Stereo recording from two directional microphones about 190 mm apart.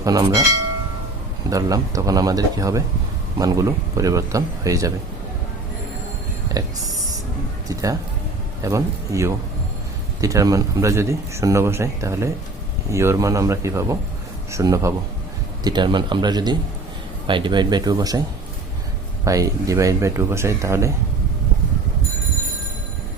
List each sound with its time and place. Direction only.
0.0 s speech: 20° right (ahead or behind)
1.5 s speech: 20° right (ahead or behind)
6.6 s speech: 20° right (ahead or behind)
19.2 s speech: 15° right (ahead or behind)